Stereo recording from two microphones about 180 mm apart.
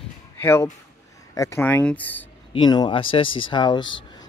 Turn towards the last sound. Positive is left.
turn(degrees=25)  # may be behind; listen again after turning